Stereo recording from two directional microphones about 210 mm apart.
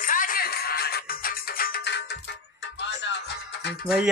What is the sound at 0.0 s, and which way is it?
Music, 40° left (ahead or behind).